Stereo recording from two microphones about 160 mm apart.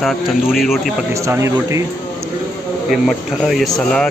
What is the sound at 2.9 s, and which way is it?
Speech, centre (ahead or behind).